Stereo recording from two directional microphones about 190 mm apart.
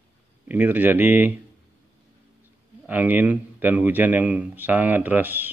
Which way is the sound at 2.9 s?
10° right (ahead or behind).